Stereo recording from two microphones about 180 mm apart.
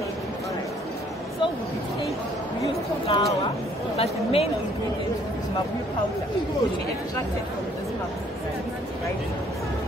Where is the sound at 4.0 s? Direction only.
35° left (ahead or behind).